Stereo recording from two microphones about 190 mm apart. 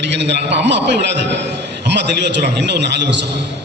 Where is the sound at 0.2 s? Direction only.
65° right (ahead or behind).